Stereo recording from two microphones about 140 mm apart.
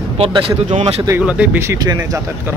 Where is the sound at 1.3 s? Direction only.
10° right (ahead or behind).